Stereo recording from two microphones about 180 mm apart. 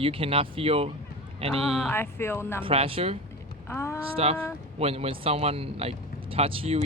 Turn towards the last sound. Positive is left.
turn(degrees=-30)  # may be behind; listen again after turning